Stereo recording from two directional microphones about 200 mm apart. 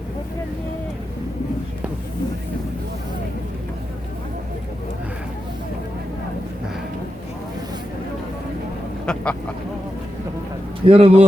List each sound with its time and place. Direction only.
9.1 s speech: 5° left (ahead or behind)
10.8 s speech: 30° right (ahead or behind)